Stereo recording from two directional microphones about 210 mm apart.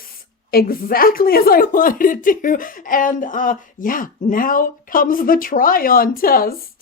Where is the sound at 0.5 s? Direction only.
45° left (ahead or behind).